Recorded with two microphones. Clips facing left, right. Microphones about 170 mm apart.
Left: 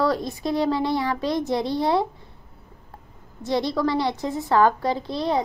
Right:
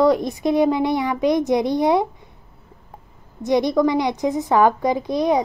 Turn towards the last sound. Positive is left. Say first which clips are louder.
# right 5 dB
turn(degrees=-15)  # may be behind; listen again after turning